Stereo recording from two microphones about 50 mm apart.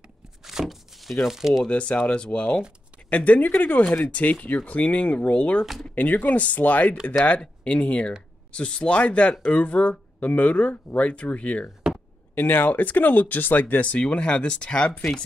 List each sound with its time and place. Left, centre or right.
0.5 s a sound: centre
1.2 s speech: centre
1.7 s speech: left
13.9 s speech: centre
14.9 s speech: centre